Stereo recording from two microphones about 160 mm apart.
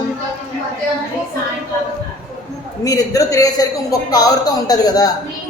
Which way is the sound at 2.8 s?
20° left (ahead or behind).